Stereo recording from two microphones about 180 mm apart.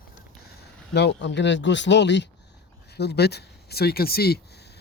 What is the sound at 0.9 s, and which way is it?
Speech, 75° left (ahead or behind).